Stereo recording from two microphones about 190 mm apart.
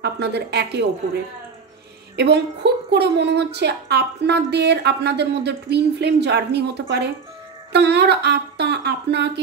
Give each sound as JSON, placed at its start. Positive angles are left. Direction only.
{"t": 0.0, "sound": "a woman's voice", "side_deg": -60}
{"t": 2.1, "sound": "a woman's voice", "side_deg": -60}